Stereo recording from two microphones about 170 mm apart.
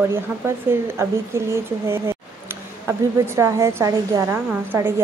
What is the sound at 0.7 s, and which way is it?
A woman's voice, 15° right (ahead or behind).